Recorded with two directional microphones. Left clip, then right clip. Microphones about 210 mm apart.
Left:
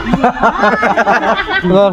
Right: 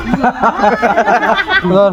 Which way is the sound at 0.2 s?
50° left (ahead or behind).